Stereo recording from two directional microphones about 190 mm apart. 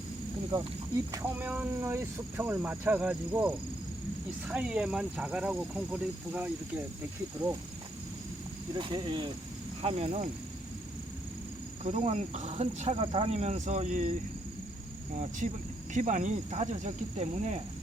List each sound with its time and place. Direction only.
0.5 s speech: 20° right (ahead or behind)
1.4 s speech: 10° right (ahead or behind)
8.7 s speech: 25° right (ahead or behind)
11.9 s speech: 35° right (ahead or behind)
15.9 s speech: 40° right (ahead or behind)